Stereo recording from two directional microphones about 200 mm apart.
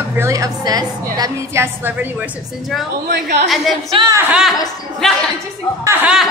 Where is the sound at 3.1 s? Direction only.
60° right (ahead or behind).